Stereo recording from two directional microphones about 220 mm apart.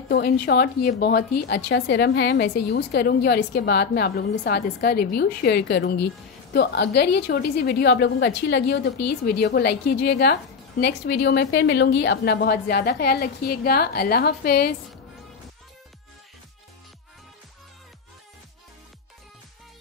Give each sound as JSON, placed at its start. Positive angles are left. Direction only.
{"t": 0.1, "sound": "a woman's voice", "side_deg": 45}